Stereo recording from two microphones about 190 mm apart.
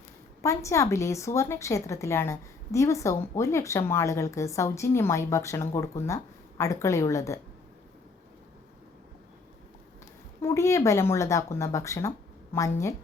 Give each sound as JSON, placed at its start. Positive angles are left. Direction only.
{"t": 0.4, "sound": "a woman's voice", "side_deg": 15}
{"t": 10.4, "sound": "a woman's voice", "side_deg": 15}